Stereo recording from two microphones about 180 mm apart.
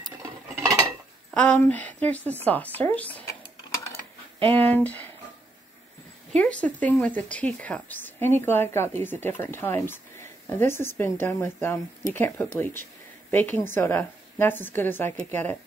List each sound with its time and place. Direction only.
0.6 s cutlery: 20° right (ahead or behind)
1.3 s speech: 5° left (ahead or behind)
4.6 s speech: 10° left (ahead or behind)
6.3 s speech: 5° left (ahead or behind)